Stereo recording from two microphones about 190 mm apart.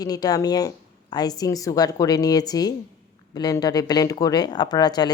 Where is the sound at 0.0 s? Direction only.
20° left (ahead or behind).